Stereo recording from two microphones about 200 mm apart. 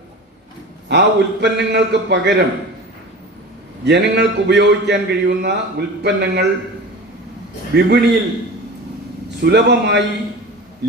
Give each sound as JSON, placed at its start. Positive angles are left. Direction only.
{"t": 0.8, "sound": "a man's voice", "side_deg": -60}
{"t": 3.8, "sound": "a man's voice", "side_deg": -60}
{"t": 7.7, "sound": "a man's voice", "side_deg": -55}
{"t": 9.4, "sound": "a man's voice", "side_deg": -55}